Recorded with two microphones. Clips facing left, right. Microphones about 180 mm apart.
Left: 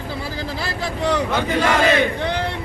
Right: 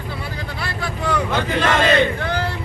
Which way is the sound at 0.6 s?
25° left (ahead or behind).